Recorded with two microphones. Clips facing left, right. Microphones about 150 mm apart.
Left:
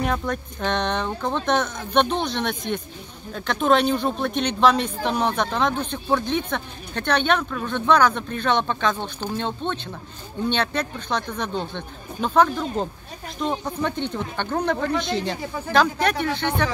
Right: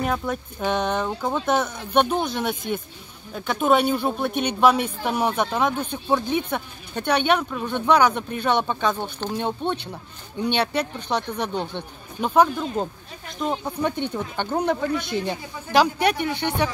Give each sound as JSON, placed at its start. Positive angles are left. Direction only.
{"t": 0.0, "sound": "speech", "side_deg": -5}
{"t": 14.8, "sound": "speech", "side_deg": 65}
{"t": 15.7, "sound": "speech", "side_deg": -10}